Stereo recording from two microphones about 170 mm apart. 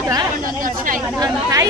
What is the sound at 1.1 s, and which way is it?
Speech, 20° right (ahead or behind).